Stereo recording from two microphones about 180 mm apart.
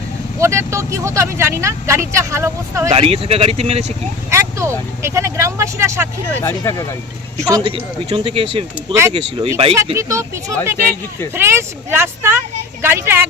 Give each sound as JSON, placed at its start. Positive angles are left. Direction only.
{"t": 0.3, "sound": "speech", "side_deg": -15}
{"t": 2.9, "sound": "speech", "side_deg": -30}
{"t": 4.3, "sound": "speech", "side_deg": -15}
{"t": 6.4, "sound": "speech", "side_deg": 15}
{"t": 7.4, "sound": "speech", "side_deg": -25}
{"t": 9.7, "sound": "speech", "side_deg": -15}